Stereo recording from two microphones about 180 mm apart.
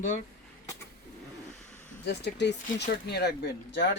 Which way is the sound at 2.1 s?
70° left (ahead or behind).